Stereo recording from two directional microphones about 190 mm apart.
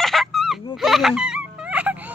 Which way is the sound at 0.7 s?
Centre (ahead or behind).